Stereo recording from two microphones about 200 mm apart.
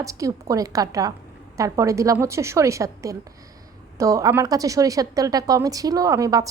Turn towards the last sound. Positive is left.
turn(degrees=-15)  # may be behind; listen again after turning